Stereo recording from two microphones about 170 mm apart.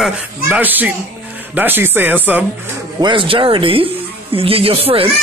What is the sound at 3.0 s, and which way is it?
Speech, 30° right (ahead or behind).